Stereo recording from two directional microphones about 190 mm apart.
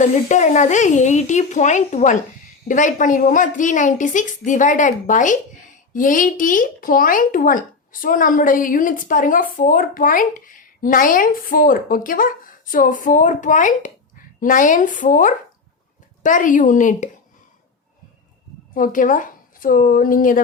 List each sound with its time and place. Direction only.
0.0 s a woman's voice: 40° left (ahead or behind)
18.7 s speech: 45° left (ahead or behind)